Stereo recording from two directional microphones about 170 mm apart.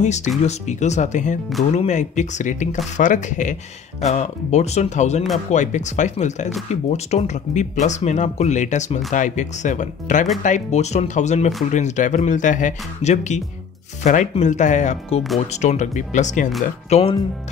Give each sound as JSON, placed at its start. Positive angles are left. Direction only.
{"t": 0.0, "sound": "speech", "side_deg": 45}
{"t": 16.9, "sound": "speech", "side_deg": 30}